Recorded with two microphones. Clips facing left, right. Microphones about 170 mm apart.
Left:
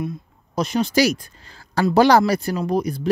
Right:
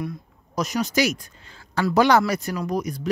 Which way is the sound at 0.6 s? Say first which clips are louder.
Left 4 dB; 30° left (ahead or behind).